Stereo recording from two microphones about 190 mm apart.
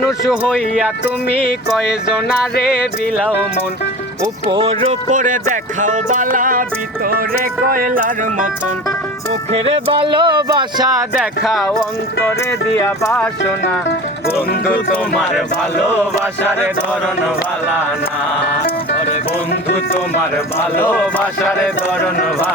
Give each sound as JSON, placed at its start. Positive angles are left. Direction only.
{"t": 0.3, "sound": "music", "side_deg": 0}
{"t": 4.2, "sound": "speech", "side_deg": -25}
{"t": 7.7, "sound": "speech", "side_deg": -45}
{"t": 9.5, "sound": "speech", "side_deg": -30}
{"t": 11.2, "sound": "music", "side_deg": 0}
{"t": 12.2, "sound": "speech", "side_deg": 15}
{"t": 14.7, "sound": "music", "side_deg": 0}
{"t": 20.6, "sound": "speech", "side_deg": 10}